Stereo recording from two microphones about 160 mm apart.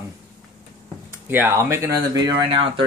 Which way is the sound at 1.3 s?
15° right (ahead or behind).